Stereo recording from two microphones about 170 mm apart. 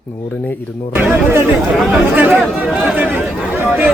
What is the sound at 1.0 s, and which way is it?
Speech, 10° right (ahead or behind).